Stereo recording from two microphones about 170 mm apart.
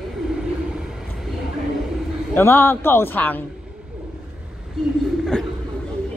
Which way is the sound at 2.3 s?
15° left (ahead or behind).